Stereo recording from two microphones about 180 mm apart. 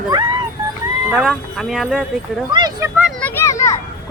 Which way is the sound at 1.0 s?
10° right (ahead or behind).